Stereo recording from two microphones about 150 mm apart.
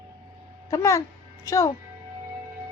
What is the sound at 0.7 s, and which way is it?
Speech, 20° left (ahead or behind).